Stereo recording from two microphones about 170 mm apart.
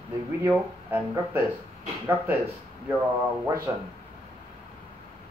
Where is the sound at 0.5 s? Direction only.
10° right (ahead or behind).